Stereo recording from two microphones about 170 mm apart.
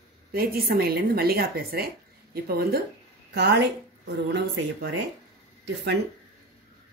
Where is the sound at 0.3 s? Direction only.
60° right (ahead or behind).